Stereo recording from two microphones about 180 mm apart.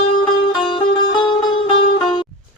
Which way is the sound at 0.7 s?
25° left (ahead or behind).